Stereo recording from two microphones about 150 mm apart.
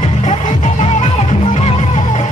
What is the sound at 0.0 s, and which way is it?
Music, 50° left (ahead or behind).